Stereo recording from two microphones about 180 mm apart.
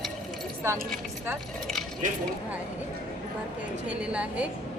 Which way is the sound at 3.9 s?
5° right (ahead or behind).